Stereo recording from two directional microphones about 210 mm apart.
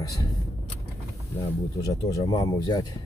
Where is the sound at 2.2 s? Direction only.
20° left (ahead or behind).